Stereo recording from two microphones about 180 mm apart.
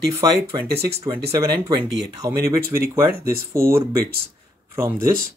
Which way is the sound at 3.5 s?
15° right (ahead or behind).